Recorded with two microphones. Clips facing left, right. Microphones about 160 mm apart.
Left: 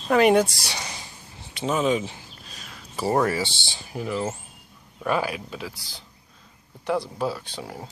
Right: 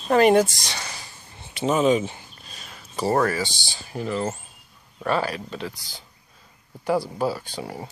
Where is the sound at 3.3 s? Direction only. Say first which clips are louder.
Even; 25° left (ahead or behind).